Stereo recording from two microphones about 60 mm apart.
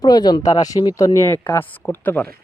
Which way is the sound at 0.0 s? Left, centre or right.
Left.